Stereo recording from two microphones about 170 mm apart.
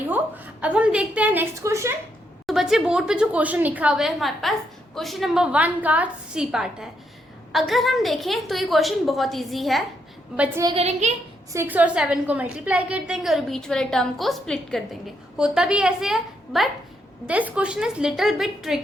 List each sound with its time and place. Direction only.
0.6 s a woman's voice: 5° right (ahead or behind)
2.5 s a woman's voice: centre (ahead or behind)
10.8 s a woman's voice: 40° right (ahead or behind)
11.5 s a woman's voice: 10° right (ahead or behind)